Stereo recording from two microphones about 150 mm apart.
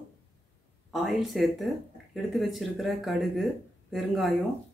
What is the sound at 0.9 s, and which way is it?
Speech, centre (ahead or behind).